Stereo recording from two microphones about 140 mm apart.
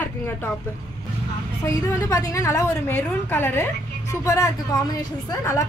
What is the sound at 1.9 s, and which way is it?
A woman's voice, 25° left (ahead or behind).